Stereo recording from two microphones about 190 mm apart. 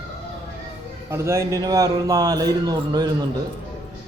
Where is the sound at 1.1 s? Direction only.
15° right (ahead or behind).